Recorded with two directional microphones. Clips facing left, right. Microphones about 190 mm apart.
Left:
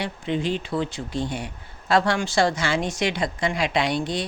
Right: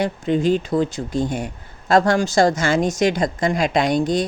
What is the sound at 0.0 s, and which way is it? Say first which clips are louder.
Speech: right 7 dB; 45° right (ahead or behind).